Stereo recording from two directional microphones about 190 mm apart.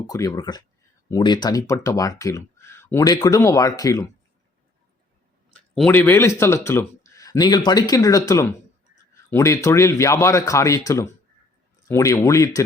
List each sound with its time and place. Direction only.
0.1 s speech: 20° left (ahead or behind)
5.5 s speech: 5° left (ahead or behind)